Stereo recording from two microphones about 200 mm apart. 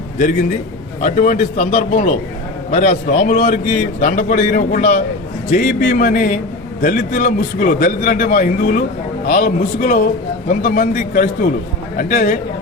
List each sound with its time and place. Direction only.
1.0 s a man's voice: 40° left (ahead or behind)